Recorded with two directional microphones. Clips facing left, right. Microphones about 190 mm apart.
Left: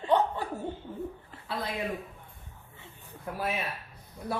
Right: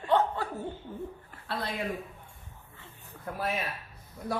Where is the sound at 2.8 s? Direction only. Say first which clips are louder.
Left 1 dB; 15° left (ahead or behind).